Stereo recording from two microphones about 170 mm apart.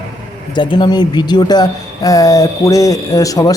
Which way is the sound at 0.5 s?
25° left (ahead or behind).